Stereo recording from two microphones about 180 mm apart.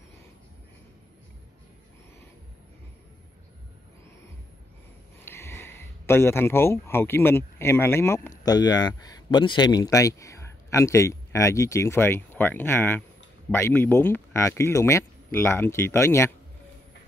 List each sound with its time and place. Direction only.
5.2 s speech: 15° left (ahead or behind)